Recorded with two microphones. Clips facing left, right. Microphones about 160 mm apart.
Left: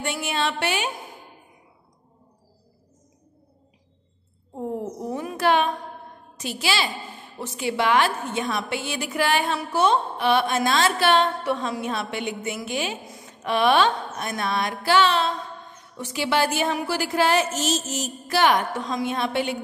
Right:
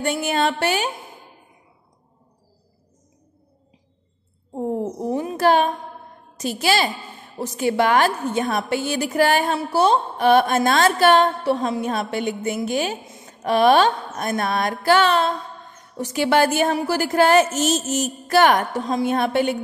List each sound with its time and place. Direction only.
0.0 s a woman's voice: 40° right (ahead or behind)
4.6 s speech: 30° right (ahead or behind)
5.4 s a woman's voice: 40° right (ahead or behind)